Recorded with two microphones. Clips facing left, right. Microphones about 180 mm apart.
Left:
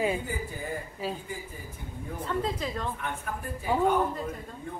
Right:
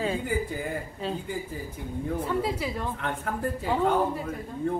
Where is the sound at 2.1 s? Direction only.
10° right (ahead or behind).